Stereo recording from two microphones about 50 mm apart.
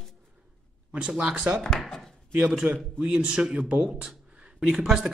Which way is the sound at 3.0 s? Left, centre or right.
Centre.